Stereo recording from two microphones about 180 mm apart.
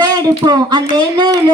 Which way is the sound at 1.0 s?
25° right (ahead or behind).